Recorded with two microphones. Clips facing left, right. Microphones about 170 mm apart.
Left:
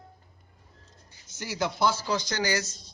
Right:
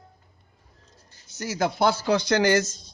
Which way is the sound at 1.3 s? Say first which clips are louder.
Right 5 dB; 40° right (ahead or behind).